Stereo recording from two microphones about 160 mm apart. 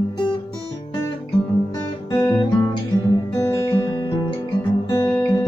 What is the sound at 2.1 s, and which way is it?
Guitar, 25° left (ahead or behind).